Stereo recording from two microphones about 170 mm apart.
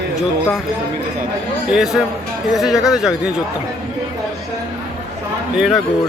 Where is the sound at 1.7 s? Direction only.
Centre (ahead or behind).